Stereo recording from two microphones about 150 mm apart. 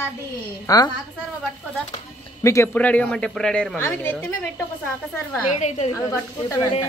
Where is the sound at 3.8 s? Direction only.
15° left (ahead or behind).